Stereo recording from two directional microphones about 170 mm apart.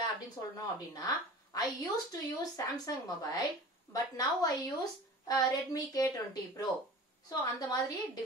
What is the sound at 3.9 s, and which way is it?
A woman's voice, 20° left (ahead or behind).